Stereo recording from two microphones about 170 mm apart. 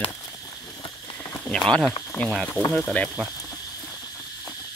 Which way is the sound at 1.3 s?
10° left (ahead or behind).